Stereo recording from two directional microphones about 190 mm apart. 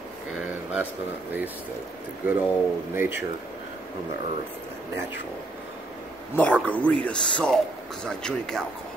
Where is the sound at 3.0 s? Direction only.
10° right (ahead or behind).